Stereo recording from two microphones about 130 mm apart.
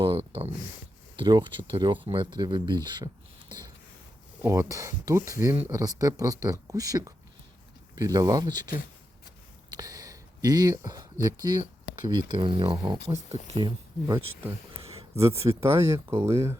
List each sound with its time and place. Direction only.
0.0 s speech: 40° right (ahead or behind)
4.4 s speech: 25° right (ahead or behind)
9.7 s speech: 30° right (ahead or behind)
15.1 s speech: 20° right (ahead or behind)